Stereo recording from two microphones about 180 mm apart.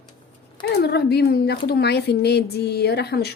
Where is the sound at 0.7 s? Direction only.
70° left (ahead or behind).